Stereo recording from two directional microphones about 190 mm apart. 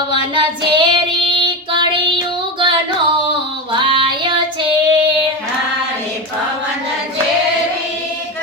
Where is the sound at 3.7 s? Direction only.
25° right (ahead or behind).